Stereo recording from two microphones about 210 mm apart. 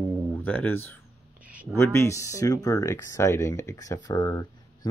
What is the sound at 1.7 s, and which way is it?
Speech, 10° left (ahead or behind).